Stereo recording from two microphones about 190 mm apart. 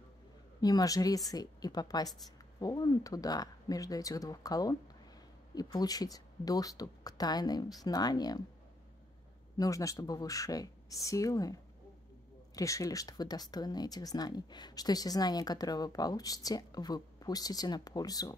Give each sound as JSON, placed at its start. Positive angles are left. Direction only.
{"t": 0.6, "sound": "speech", "side_deg": 20}
{"t": 9.6, "sound": "speech", "side_deg": 15}